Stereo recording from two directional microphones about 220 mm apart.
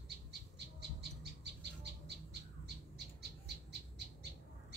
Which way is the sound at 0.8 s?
50° right (ahead or behind).